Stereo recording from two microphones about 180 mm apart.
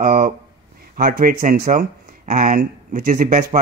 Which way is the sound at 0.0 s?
50° right (ahead or behind).